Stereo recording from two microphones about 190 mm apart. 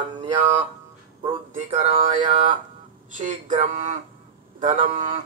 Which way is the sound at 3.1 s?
40° right (ahead or behind).